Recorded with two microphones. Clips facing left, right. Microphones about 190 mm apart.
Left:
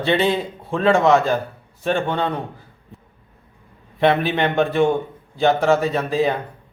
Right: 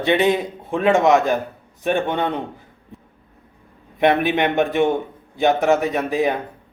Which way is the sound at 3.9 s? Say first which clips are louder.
Right 1 dB; 15° right (ahead or behind).